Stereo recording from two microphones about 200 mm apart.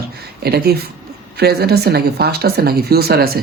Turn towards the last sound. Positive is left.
turn(degrees=-50)  # may be behind; listen again after turning